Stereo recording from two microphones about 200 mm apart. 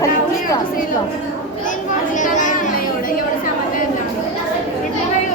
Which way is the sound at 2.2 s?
40° left (ahead or behind).